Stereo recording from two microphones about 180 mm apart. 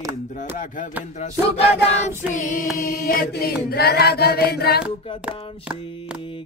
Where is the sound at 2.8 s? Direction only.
55° left (ahead or behind).